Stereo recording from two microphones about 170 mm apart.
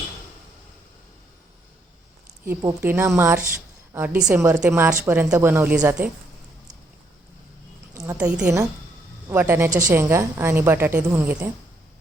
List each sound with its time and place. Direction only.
2.5 s a woman's voice: 15° right (ahead or behind)
3.5 s a sound: 10° right (ahead or behind)
4.4 s a woman's voice: 15° right (ahead or behind)
8.0 s a woman's voice: 10° right (ahead or behind)
9.6 s a woman's voice: 50° right (ahead or behind)
9.9 s a woman's voice: 15° right (ahead or behind)